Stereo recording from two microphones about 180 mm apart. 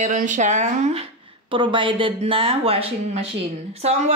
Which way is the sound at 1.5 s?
25° right (ahead or behind).